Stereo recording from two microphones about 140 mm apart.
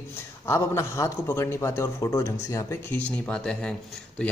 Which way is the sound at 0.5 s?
20° left (ahead or behind).